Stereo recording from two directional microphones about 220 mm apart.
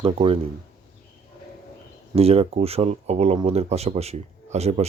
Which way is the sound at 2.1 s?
25° right (ahead or behind).